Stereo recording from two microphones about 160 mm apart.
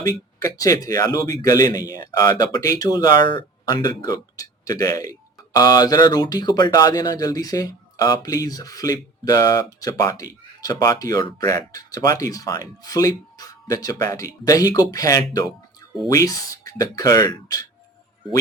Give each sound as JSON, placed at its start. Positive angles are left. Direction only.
{"t": 0.0, "sound": "speech", "side_deg": 20}
{"t": 15.8, "sound": "music", "side_deg": 25}
{"t": 16.1, "sound": "speech", "side_deg": 20}